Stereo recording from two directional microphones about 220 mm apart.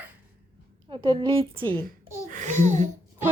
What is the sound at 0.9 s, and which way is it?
Speech, 25° right (ahead or behind).